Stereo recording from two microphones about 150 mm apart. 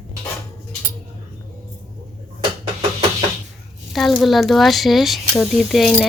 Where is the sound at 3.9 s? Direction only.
Centre (ahead or behind).